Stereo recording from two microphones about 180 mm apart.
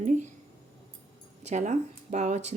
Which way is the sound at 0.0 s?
45° right (ahead or behind).